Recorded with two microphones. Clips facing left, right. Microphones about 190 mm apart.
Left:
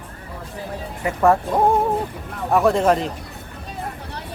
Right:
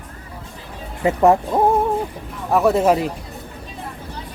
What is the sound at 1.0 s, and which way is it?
Speech, 20° right (ahead or behind).